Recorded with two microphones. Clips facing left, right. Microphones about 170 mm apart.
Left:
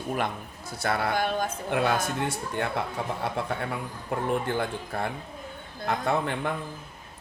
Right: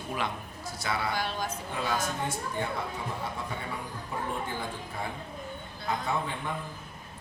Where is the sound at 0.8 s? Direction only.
55° left (ahead or behind).